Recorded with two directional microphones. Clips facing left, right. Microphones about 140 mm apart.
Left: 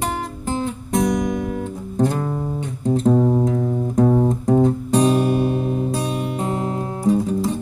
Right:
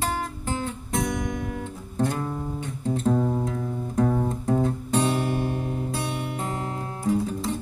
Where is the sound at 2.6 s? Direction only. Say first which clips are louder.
Left 8 dB; 20° left (ahead or behind).